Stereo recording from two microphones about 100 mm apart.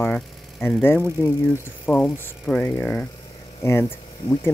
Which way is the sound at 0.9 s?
20° right (ahead or behind).